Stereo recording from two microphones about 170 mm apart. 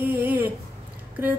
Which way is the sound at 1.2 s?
10° right (ahead or behind).